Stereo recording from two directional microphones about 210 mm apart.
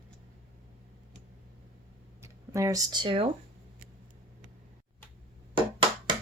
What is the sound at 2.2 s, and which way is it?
Speech, 15° right (ahead or behind).